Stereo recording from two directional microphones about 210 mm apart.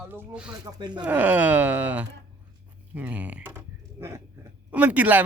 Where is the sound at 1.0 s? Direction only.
5° right (ahead or behind).